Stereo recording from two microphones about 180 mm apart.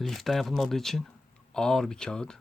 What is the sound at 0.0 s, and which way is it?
Speech, centre (ahead or behind).